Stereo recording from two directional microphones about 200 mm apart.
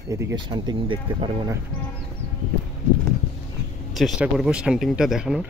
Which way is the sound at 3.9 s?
Centre (ahead or behind).